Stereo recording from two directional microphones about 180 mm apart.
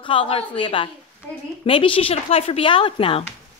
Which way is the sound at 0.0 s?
30° left (ahead or behind).